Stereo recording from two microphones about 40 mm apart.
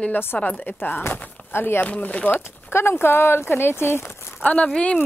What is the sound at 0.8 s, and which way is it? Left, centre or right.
Speech, left.